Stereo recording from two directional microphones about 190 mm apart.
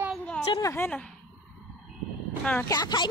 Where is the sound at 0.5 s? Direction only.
15° left (ahead or behind).